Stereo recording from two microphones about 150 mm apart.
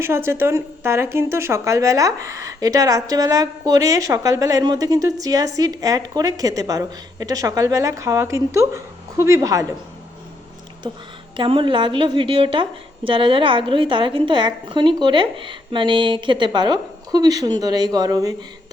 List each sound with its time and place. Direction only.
0.0 s speech: 15° right (ahead or behind)
10.8 s a woman's voice: 30° right (ahead or behind)